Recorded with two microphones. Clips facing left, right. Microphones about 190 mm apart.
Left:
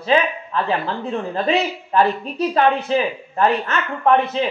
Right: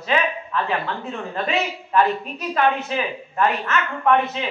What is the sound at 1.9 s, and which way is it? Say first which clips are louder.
A woman's voice: left 2 dB; 30° left (ahead or behind).